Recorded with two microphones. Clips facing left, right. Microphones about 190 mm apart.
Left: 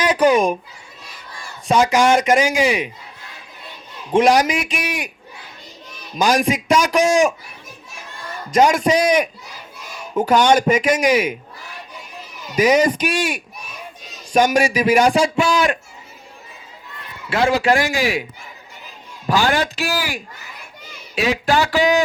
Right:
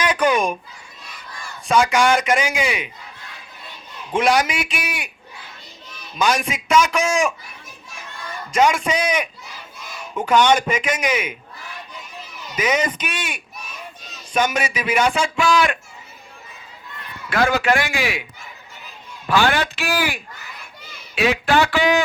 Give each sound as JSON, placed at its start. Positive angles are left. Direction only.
{"t": 0.0, "sound": "speech", "side_deg": 35}
{"t": 1.6, "sound": "a man's voice", "side_deg": 35}
{"t": 4.1, "sound": "a man's voice", "side_deg": 40}
{"t": 6.1, "sound": "a man's voice", "side_deg": 45}
{"t": 8.5, "sound": "a man's voice", "side_deg": 40}
{"t": 10.3, "sound": "a man's voice", "side_deg": 40}
{"t": 12.5, "sound": "a man's voice", "side_deg": 40}
{"t": 17.2, "sound": "a man's voice", "side_deg": 25}
{"t": 19.3, "sound": "a man's voice", "side_deg": 40}